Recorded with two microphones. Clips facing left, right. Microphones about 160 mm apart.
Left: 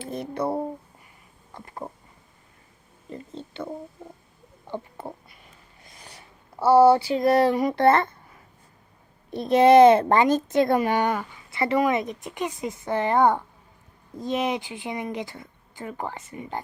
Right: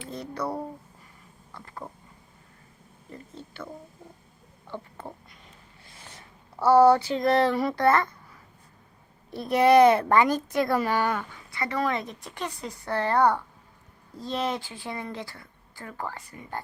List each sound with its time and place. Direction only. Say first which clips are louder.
0.1 s a woman's voice: left 5 dB; 25° left (ahead or behind)
3.1 s a woman's voice: left 6 dB; 25° left (ahead or behind)
4.7 s a sound: left 4 dB; 10° left (ahead or behind)
6.7 s a sound: left 2 dB; 10° left (ahead or behind)
7.9 s a woman's voice: left 3 dB; 25° left (ahead or behind)
9.3 s a woman's voice: left 4 dB; 20° left (ahead or behind)